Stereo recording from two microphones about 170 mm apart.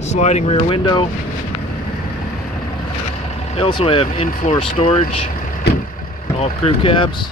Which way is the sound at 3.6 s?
30° left (ahead or behind).